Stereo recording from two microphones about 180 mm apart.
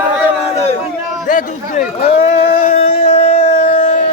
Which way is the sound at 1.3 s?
45° left (ahead or behind).